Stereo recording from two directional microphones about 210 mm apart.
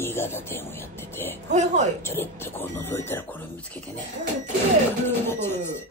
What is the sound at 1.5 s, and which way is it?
Speech, 35° right (ahead or behind).